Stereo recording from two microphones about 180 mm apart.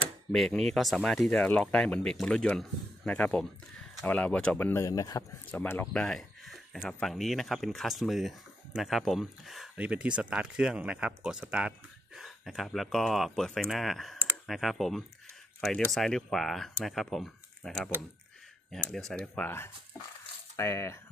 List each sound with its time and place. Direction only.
0.3 s speech: centre (ahead or behind)